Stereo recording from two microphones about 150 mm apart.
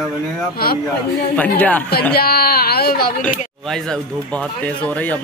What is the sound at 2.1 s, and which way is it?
Speech, 90° left.